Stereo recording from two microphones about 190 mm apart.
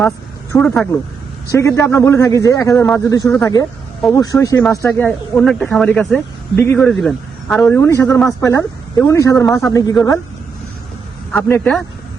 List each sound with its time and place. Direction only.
0.5 s speech: 5° left (ahead or behind)
11.3 s speech: 10° left (ahead or behind)